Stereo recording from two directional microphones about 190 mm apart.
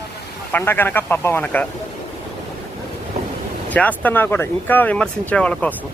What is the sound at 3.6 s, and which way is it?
Speech, 10° left (ahead or behind).